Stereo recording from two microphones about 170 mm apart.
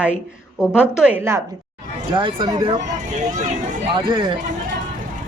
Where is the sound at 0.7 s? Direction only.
5° right (ahead or behind).